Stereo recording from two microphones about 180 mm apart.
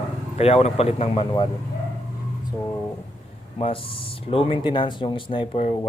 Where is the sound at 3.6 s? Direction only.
30° left (ahead or behind).